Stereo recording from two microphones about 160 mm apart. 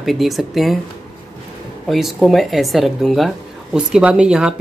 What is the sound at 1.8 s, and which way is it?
Speech, centre (ahead or behind).